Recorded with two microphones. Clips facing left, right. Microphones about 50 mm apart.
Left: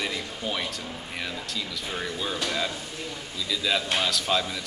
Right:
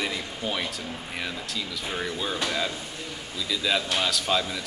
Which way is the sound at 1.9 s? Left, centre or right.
Centre.